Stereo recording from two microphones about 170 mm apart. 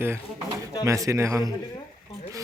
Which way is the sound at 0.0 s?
15° right (ahead or behind).